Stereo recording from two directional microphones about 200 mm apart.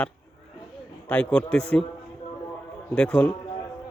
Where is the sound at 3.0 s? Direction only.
5° left (ahead or behind).